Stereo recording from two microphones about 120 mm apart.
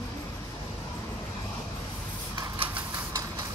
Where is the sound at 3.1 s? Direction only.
30° right (ahead or behind).